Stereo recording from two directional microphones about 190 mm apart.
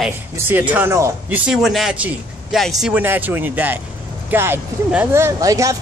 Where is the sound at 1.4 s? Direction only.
Centre (ahead or behind).